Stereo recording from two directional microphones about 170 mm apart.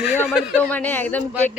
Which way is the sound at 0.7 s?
10° left (ahead or behind).